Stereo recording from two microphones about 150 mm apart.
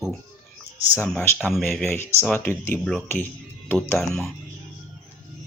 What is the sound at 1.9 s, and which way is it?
Speech, 10° left (ahead or behind).